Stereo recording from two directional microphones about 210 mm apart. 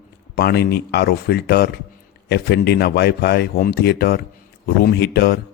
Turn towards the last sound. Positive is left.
turn(degrees=50)  # may be behind; listen again after turning